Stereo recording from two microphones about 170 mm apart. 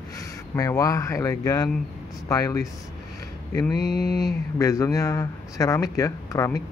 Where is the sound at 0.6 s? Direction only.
20° left (ahead or behind).